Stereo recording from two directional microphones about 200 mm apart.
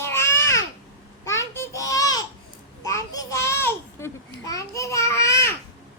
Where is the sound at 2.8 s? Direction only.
15° left (ahead or behind).